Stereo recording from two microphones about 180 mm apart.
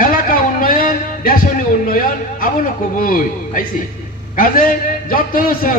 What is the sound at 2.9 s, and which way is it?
A man's voice, 50° left (ahead or behind).